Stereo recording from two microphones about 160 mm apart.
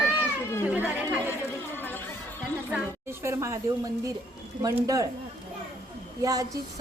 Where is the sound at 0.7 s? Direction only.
10° right (ahead or behind).